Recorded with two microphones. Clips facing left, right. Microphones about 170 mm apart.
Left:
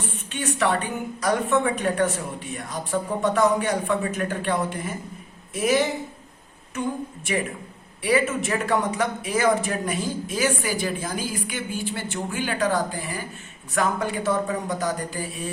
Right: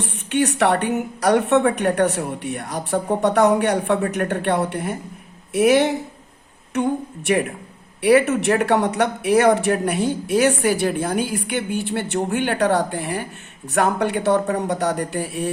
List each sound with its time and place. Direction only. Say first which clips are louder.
0.0 s speech: right 9 dB; 70° right (ahead or behind)